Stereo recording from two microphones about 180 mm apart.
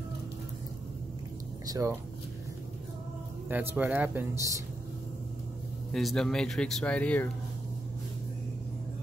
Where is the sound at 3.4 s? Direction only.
10° right (ahead or behind).